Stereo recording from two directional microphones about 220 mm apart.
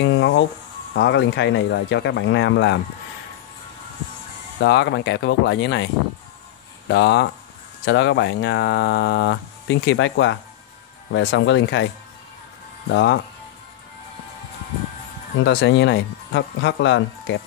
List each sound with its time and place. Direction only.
0.0 s speech: 55° left (ahead or behind)
4.6 s speech: 50° left (ahead or behind)
6.9 s speech: 50° left (ahead or behind)
12.9 s speech: 55° left (ahead or behind)
15.4 s speech: 55° left (ahead or behind)